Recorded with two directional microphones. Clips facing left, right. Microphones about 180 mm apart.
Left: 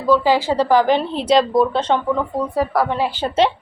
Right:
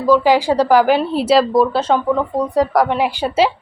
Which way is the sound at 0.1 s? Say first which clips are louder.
Right 3 dB; 15° right (ahead or behind).